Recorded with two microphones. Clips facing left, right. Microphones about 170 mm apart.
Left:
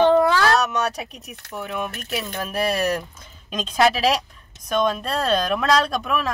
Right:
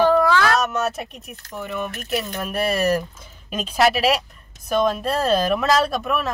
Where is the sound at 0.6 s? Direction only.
Centre (ahead or behind).